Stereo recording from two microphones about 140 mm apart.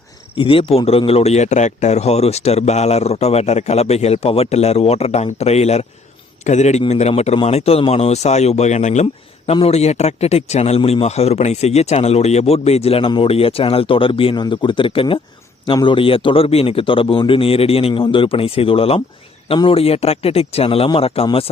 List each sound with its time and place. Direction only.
0.3 s a man's voice: 40° left (ahead or behind)